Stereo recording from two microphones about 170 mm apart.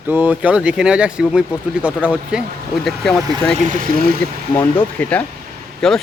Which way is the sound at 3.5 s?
50° right (ahead or behind).